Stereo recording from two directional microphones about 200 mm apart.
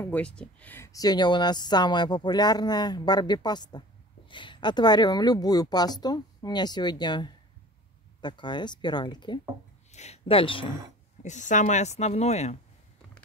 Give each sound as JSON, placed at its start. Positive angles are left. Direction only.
{"t": 0.0, "sound": "speech", "side_deg": 5}
{"t": 9.8, "sound": "speech", "side_deg": 35}
{"t": 11.2, "sound": "speech", "side_deg": 35}